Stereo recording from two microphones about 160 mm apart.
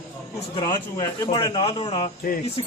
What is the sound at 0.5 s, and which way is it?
A man's voice, 25° left (ahead or behind).